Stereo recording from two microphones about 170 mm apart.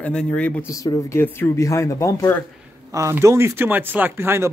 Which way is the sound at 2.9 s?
20° right (ahead or behind).